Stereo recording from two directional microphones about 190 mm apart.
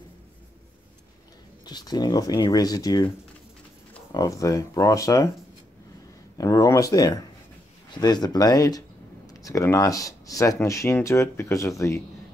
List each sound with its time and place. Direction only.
1.7 s speech: 20° left (ahead or behind)
4.1 s speech: 20° left (ahead or behind)
6.3 s speech: 20° left (ahead or behind)